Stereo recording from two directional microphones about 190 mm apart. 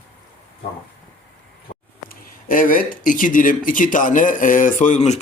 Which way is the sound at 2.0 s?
45° left (ahead or behind).